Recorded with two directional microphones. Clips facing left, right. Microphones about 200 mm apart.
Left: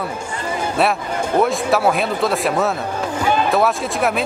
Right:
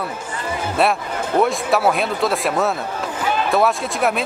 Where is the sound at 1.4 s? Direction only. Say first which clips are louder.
Even; centre (ahead or behind).